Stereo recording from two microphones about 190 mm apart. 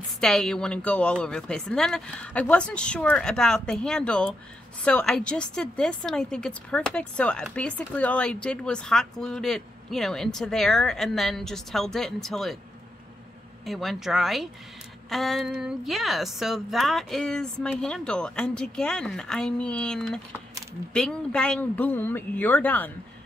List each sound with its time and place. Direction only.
0.2 s a woman's voice: 5° left (ahead or behind)
13.7 s a woman's voice: centre (ahead or behind)